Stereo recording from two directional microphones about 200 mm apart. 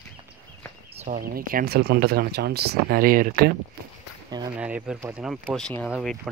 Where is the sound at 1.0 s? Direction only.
45° right (ahead or behind).